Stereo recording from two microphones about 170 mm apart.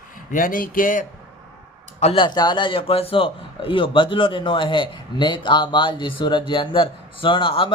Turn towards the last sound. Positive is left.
turn(degrees=30)  # may be behind; listen again after turning